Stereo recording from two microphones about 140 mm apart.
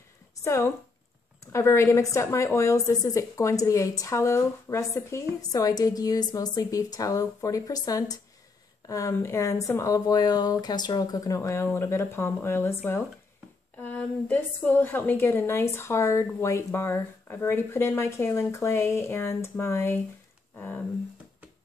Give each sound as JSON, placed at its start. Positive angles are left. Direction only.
{"t": 0.4, "sound": "a woman's voice", "side_deg": 20}